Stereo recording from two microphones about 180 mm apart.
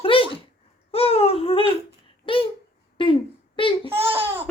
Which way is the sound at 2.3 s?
30° left (ahead or behind).